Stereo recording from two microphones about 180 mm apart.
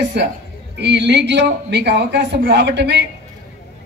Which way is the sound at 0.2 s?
70° right (ahead or behind).